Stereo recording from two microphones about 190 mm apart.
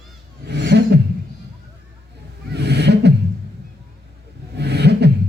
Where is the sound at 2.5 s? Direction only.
60° right (ahead or behind).